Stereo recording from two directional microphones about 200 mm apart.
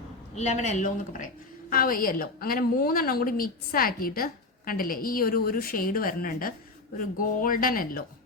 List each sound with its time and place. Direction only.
0.3 s a woman's voice: 35° left (ahead or behind)